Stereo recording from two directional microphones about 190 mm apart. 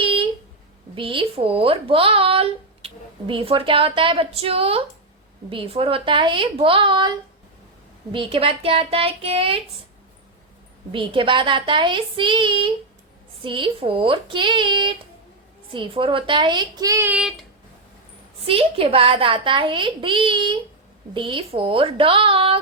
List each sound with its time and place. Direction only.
0.0 s a sound: 30° right (ahead or behind)
0.9 s speech: 25° right (ahead or behind)
8.1 s speech: 30° right (ahead or behind)
10.9 s speech: 25° right (ahead or behind); by 17.4 s 5° right (ahead or behind)
18.4 s speech: 30° right (ahead or behind)